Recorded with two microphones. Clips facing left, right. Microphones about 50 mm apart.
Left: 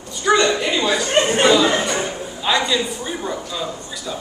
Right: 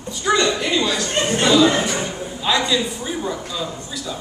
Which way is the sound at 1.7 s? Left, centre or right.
Centre.